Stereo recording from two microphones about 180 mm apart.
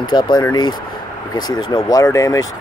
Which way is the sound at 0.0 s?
25° left (ahead or behind).